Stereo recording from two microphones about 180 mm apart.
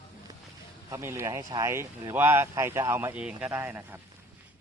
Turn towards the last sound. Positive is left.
turn(degrees=-10)  # may be behind; listen again after turning